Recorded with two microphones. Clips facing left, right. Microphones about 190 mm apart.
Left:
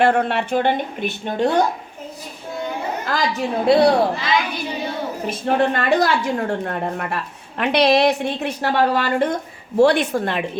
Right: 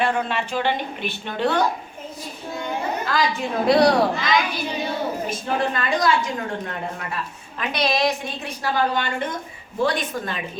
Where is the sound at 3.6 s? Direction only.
25° left (ahead or behind).